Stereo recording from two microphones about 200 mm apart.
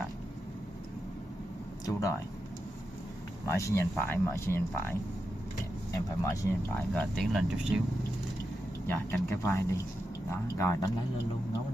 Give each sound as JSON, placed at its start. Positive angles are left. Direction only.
{"t": 1.9, "sound": "speech", "side_deg": 15}
{"t": 3.4, "sound": "speech", "side_deg": 15}
{"t": 6.2, "sound": "speech", "side_deg": 10}
{"t": 8.8, "sound": "speech", "side_deg": 10}